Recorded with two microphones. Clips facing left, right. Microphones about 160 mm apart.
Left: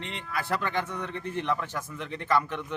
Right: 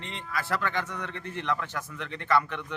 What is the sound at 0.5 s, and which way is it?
A man's voice, 15° left (ahead or behind).